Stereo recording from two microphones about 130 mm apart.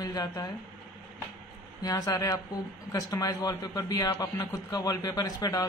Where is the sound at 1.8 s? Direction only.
25° left (ahead or behind).